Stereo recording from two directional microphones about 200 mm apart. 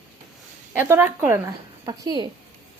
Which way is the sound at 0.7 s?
10° right (ahead or behind).